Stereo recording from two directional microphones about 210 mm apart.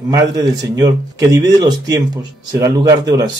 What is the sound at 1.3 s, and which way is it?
Speech, 15° right (ahead or behind).